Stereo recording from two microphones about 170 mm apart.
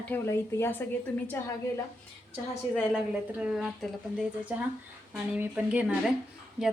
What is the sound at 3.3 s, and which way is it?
Speech, 5° right (ahead or behind).